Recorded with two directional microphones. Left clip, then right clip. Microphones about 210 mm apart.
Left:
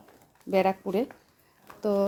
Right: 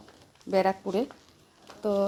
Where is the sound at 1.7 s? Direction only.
20° left (ahead or behind).